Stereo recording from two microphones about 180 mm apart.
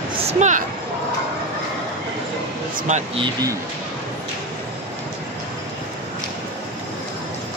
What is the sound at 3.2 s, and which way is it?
Speech, 25° right (ahead or behind).